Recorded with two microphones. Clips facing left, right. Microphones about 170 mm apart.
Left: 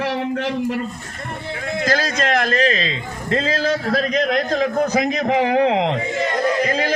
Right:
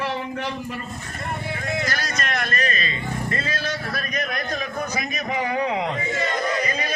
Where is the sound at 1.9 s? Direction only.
90° left.